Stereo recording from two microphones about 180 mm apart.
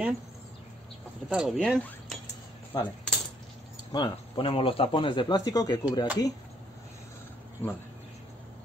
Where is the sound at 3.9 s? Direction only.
25° left (ahead or behind).